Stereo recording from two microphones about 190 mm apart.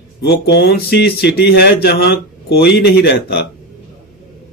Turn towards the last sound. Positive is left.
turn(degrees=60)  # may be behind; listen again after turning